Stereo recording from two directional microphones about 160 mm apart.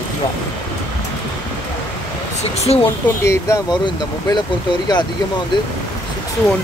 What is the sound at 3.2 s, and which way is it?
Speech, 20° left (ahead or behind).